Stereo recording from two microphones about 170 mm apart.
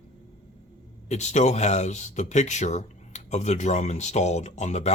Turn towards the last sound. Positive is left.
turn(degrees=40)  # may be behind; listen again after turning